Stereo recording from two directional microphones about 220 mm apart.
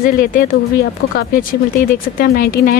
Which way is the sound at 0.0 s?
40° left (ahead or behind).